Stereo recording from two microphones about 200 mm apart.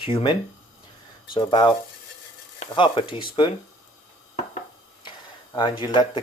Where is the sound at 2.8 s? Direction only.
25° left (ahead or behind).